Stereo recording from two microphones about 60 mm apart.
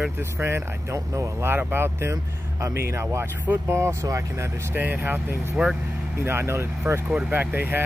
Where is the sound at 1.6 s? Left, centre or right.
Right.